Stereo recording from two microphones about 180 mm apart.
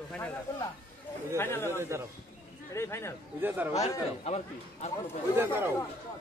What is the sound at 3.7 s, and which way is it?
A man's voice, 35° left (ahead or behind).